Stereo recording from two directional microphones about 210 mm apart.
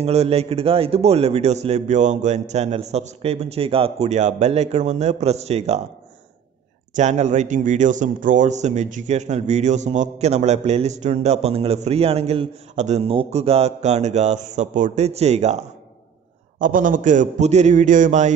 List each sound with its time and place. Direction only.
0.0 s a man's voice: 30° right (ahead or behind)
7.0 s a man's voice: 35° right (ahead or behind)